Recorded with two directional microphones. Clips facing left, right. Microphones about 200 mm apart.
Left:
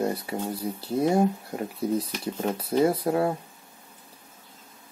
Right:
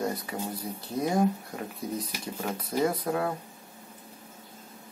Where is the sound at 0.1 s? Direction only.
30° left (ahead or behind).